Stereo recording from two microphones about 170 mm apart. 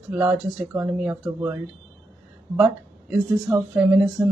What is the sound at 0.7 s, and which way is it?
A woman's voice, 10° right (ahead or behind).